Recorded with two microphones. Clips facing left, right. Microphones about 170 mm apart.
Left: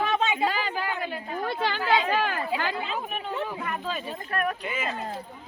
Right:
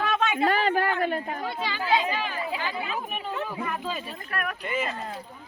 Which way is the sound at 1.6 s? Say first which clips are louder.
Left 1 dB; 60° left (ahead or behind).